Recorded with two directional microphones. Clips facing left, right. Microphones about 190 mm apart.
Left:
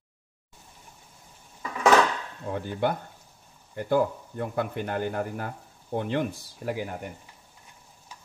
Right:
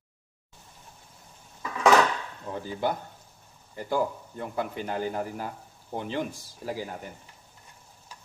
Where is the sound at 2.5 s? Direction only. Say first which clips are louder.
Left 2 dB; 60° left (ahead or behind).